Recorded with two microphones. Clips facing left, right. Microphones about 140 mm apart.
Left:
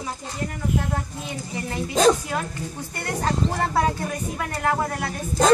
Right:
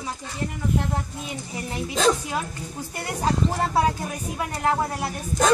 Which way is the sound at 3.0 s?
10° right (ahead or behind).